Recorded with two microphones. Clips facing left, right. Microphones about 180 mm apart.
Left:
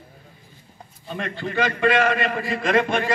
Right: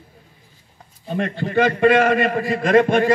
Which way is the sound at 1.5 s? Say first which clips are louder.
Right 5 dB; 50° right (ahead or behind).